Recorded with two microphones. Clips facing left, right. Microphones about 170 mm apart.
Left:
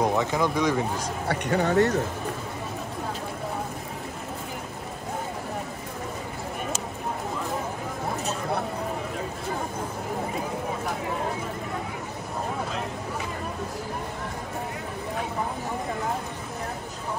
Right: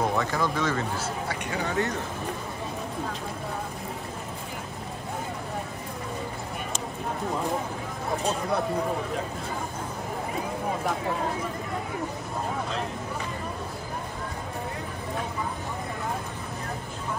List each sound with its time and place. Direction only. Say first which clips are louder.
0.0 s speech: left 2 dB; 20° left (ahead or behind)
1.3 s speech: left 9 dB; 60° left (ahead or behind)